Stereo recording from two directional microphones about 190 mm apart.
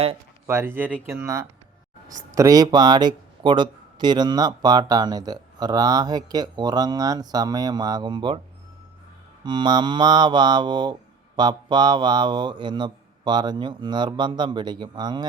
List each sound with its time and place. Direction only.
0.4 s speech: 15° right (ahead or behind)
9.4 s speech: 25° right (ahead or behind)